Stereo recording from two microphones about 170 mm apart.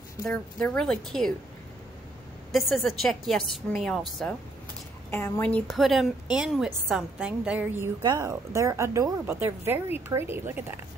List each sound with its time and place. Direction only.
0.3 s a woman's voice: 5° left (ahead or behind)
2.5 s a woman's voice: centre (ahead or behind)
5.1 s a woman's voice: 15° left (ahead or behind); by 7.9 s 10° right (ahead or behind)
8.0 s speech: 25° right (ahead or behind)